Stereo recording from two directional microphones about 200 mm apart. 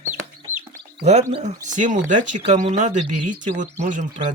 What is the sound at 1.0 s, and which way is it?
Speech, 35° right (ahead or behind).